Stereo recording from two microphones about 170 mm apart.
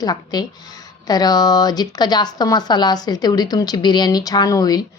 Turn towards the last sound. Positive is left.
turn(degrees=20)  # may be behind; listen again after turning